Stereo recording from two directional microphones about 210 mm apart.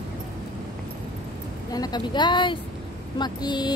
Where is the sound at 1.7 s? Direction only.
20° left (ahead or behind).